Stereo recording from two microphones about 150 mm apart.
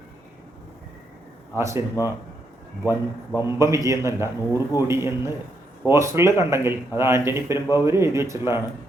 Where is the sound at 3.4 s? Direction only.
20° right (ahead or behind).